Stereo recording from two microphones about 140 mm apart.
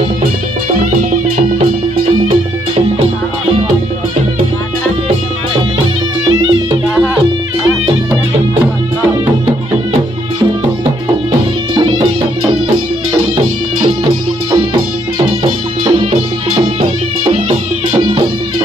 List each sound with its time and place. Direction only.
15.8 s music: 40° right (ahead or behind)